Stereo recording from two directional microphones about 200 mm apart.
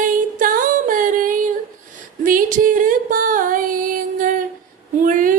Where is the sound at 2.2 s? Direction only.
45° right (ahead or behind).